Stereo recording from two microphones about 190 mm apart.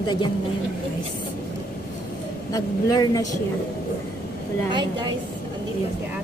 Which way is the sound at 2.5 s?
20° left (ahead or behind).